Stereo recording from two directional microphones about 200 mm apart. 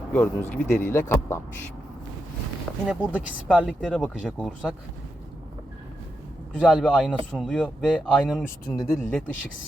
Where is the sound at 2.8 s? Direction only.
5° right (ahead or behind).